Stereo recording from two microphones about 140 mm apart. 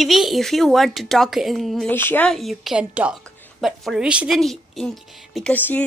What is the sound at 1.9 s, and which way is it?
Speech, 15° left (ahead or behind).